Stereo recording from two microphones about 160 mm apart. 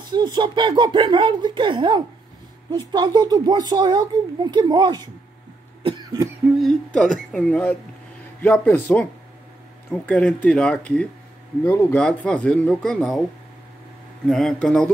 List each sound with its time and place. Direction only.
0.1 s speech: 25° right (ahead or behind)
6.6 s speech: 5° left (ahead or behind)
14.2 s speech: centre (ahead or behind)